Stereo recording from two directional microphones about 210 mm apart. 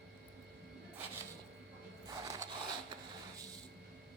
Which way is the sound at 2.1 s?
15° right (ahead or behind).